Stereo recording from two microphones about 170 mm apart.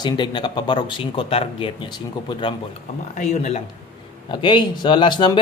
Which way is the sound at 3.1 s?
45° left (ahead or behind).